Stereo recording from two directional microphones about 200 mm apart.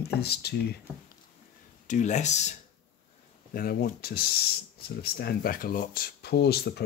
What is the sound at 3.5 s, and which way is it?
Speech, 45° left (ahead or behind).